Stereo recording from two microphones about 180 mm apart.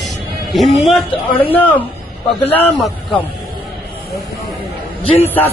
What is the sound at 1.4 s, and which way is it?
Speech, 10° left (ahead or behind).